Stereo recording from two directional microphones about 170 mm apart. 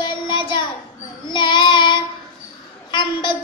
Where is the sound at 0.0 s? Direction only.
25° left (ahead or behind).